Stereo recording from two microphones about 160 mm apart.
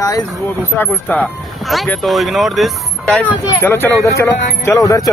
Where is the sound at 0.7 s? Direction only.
10° left (ahead or behind).